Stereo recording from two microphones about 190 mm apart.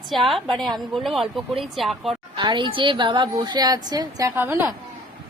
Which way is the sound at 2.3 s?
25° right (ahead or behind).